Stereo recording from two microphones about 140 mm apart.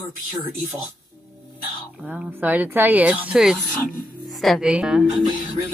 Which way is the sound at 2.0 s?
10° right (ahead or behind).